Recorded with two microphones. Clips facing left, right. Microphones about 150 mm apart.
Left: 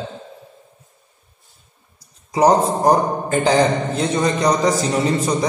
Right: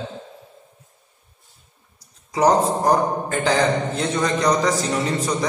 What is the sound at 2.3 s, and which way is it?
A man's voice, 20° left (ahead or behind).